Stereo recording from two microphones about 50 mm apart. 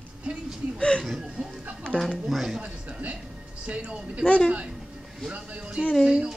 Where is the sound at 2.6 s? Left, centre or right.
Right.